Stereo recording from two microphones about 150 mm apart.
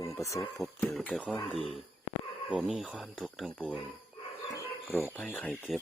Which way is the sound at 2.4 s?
Centre (ahead or behind).